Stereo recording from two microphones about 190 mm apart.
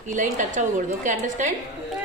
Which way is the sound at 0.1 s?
40° right (ahead or behind).